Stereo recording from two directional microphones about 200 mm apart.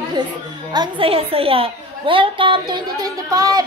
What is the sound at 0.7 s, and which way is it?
A woman's voice, 25° right (ahead or behind).